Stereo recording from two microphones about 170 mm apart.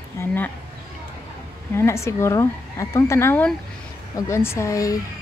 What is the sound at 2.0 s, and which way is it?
Speech, 15° left (ahead or behind).